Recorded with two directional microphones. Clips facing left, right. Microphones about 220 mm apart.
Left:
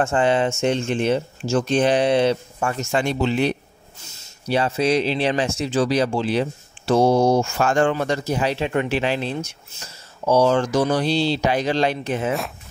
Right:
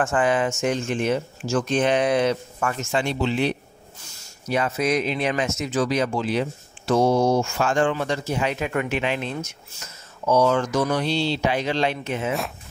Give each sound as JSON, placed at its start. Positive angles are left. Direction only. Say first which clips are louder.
{"t": 0.0, "sound": "speech", "louder": "left 2 dB", "side_deg": 25}
{"t": 2.9, "sound": "speech", "louder": "left 3 dB", "side_deg": 45}
{"t": 4.0, "sound": "speech", "louder": "left 5 dB", "side_deg": 30}
{"t": 7.5, "sound": "speech", "louder": "left 2 dB", "side_deg": 45}